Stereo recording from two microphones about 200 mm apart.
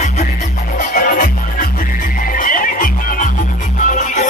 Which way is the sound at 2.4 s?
45° left (ahead or behind).